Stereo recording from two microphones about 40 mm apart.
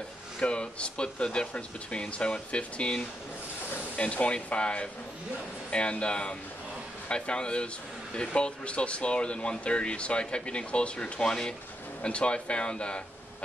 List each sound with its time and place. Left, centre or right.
0.4 s speech: left